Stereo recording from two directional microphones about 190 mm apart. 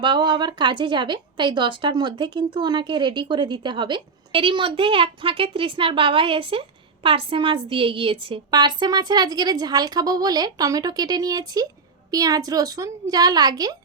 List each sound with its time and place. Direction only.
0.0 s a woman's voice: 25° right (ahead or behind)